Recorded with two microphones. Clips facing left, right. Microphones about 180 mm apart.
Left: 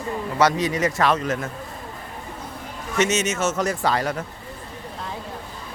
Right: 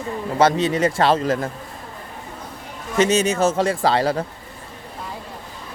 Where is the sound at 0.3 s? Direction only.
30° right (ahead or behind).